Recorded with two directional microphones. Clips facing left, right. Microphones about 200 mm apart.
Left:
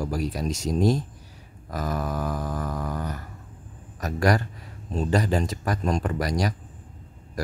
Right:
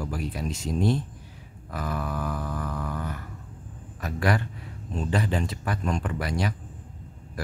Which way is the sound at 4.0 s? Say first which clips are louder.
Left 3 dB; 40° left (ahead or behind).